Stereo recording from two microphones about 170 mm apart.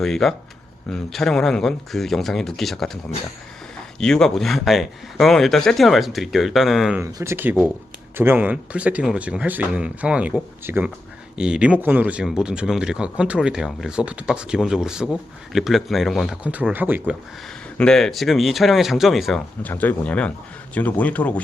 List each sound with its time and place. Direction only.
0.0 s speech: centre (ahead or behind)
4.0 s speech: 5° left (ahead or behind)
7.0 s speech: 15° right (ahead or behind)
17.7 s speech: 5° left (ahead or behind)
19.6 s speech: 10° left (ahead or behind)